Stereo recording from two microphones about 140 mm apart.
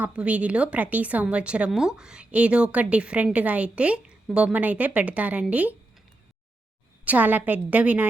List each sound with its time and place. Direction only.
0.0 s a woman's voice: 10° right (ahead or behind)
7.0 s a woman's voice: 10° right (ahead or behind)